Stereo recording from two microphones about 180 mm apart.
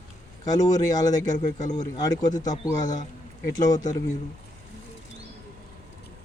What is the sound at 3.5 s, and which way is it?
Speech, 20° left (ahead or behind).